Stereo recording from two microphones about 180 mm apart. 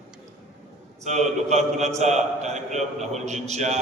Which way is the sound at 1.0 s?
40° right (ahead or behind).